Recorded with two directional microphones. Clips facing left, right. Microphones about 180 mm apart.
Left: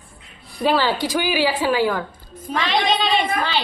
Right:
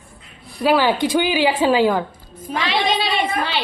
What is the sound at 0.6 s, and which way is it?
Speech, 10° right (ahead or behind).